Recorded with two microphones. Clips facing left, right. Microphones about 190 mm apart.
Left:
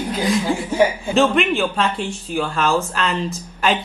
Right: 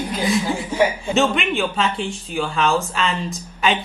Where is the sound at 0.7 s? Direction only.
10° left (ahead or behind).